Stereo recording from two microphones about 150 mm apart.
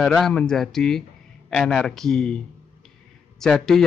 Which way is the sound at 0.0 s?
5° left (ahead or behind).